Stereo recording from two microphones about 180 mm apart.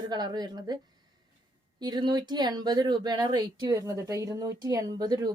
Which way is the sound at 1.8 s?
25° right (ahead or behind).